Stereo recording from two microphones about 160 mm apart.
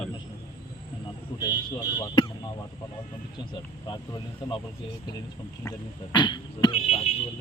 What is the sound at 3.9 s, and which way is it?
Speech, 25° left (ahead or behind).